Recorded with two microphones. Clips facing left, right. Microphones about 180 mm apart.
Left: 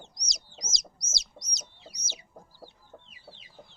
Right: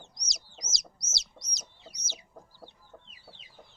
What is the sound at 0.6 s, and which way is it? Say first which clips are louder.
Chicken: left 2 dB; 15° left (ahead or behind).